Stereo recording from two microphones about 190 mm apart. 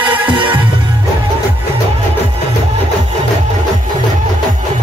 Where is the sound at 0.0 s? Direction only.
25° right (ahead or behind).